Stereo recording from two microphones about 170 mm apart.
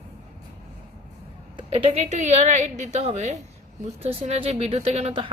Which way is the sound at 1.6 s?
35° right (ahead or behind).